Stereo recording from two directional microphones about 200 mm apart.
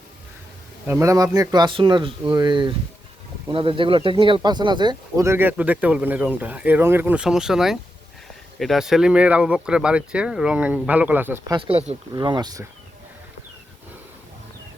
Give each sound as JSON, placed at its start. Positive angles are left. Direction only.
{"t": 0.9, "sound": "speech", "side_deg": -15}
{"t": 11.5, "sound": "speech", "side_deg": -25}